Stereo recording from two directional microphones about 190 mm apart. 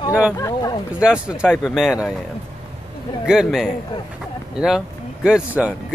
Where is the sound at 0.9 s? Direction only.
5° right (ahead or behind).